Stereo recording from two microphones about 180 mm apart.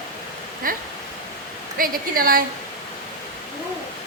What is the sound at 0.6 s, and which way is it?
A woman's voice, 50° right (ahead or behind).